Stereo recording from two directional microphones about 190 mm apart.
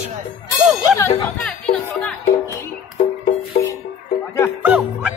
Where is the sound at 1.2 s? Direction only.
5° left (ahead or behind).